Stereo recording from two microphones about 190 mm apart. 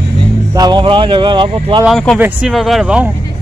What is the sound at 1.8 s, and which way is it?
Speech, centre (ahead or behind).